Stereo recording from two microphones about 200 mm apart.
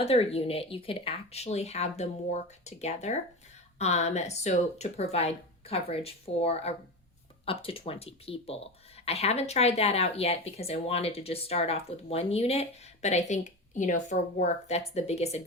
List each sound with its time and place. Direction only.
0.0 s speech: 30° left (ahead or behind)